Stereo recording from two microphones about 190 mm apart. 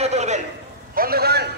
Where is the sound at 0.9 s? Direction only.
50° right (ahead or behind).